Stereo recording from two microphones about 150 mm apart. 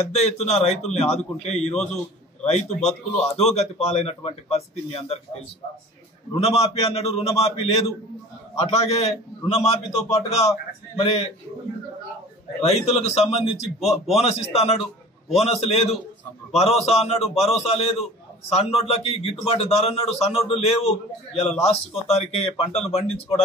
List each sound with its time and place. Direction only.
0.1 s a man's voice: 45° left (ahead or behind)
6.4 s a man's voice: 40° left (ahead or behind)
12.6 s a man's voice: 45° left (ahead or behind)
13.7 s a man's voice: centre (ahead or behind)
14.1 s a man's voice: 45° left (ahead or behind)